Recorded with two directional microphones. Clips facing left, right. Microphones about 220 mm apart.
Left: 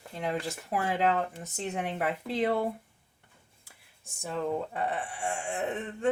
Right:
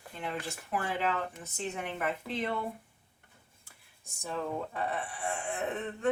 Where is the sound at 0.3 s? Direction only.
40° left (ahead or behind).